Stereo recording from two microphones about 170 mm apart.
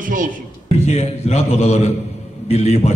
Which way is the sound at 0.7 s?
40° left (ahead or behind).